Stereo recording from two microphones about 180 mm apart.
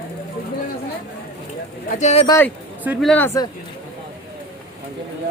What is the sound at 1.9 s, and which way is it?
Speech, 40° left (ahead or behind).